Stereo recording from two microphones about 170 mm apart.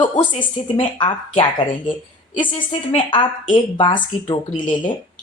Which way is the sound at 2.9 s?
25° left (ahead or behind).